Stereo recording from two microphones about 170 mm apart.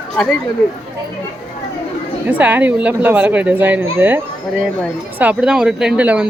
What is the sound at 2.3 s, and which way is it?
A woman's voice, 10° right (ahead or behind).